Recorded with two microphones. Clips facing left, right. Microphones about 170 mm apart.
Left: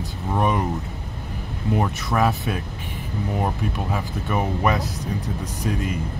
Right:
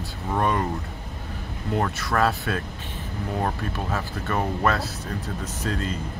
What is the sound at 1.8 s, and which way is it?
Speech, 15° left (ahead or behind).